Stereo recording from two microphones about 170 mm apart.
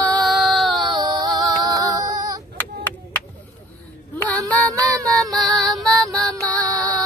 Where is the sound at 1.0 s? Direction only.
20° right (ahead or behind).